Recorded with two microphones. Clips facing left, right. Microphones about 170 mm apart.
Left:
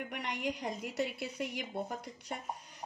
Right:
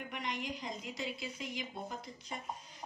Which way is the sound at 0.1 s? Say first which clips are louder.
Left 1 dB; 65° left (ahead or behind).